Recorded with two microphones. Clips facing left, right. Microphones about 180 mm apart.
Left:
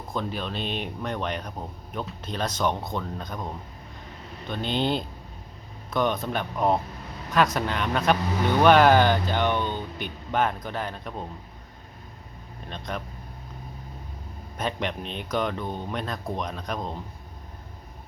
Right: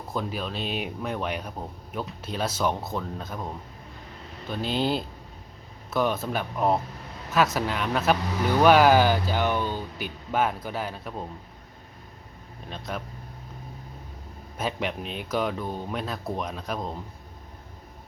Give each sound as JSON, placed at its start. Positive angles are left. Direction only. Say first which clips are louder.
{"t": 0.1, "sound": "speech", "louder": "even", "side_deg": -5}
{"t": 12.6, "sound": "speech", "louder": "even", "side_deg": -5}
{"t": 14.6, "sound": "speech", "louder": "even", "side_deg": -5}